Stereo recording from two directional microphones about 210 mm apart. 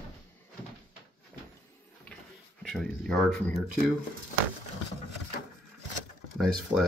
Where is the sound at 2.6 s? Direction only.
Centre (ahead or behind).